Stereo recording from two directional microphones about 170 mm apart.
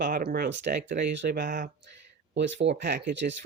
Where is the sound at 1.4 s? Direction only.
50° right (ahead or behind).